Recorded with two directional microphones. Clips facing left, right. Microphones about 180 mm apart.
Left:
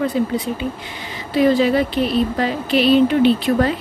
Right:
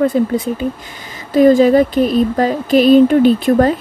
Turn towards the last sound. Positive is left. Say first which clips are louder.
# right 5 dB
turn(degrees=-45)  # may be behind; listen again after turning